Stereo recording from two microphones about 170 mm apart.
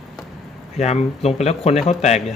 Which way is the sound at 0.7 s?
40° left (ahead or behind).